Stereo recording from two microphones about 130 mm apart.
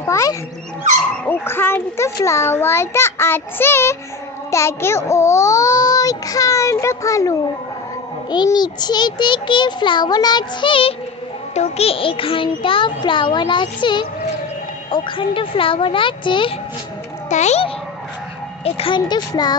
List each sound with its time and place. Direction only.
0.0 s dog: 25° left (ahead or behind)
1.2 s a child's voice: 15° left (ahead or behind); by 11.0 s 45° left (ahead or behind)
11.5 s a child's voice: 55° left (ahead or behind); by 16.5 s 40° left (ahead or behind)
17.3 s a child's voice: 60° left (ahead or behind)
18.6 s a child's voice: 45° left (ahead or behind)